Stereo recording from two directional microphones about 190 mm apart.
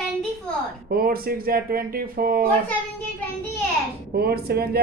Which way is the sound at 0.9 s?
50° right (ahead or behind).